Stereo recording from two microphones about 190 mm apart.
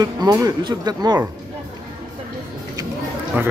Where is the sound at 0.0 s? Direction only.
20° right (ahead or behind).